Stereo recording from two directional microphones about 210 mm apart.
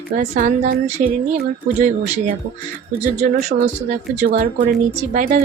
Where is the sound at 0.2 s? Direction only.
35° right (ahead or behind).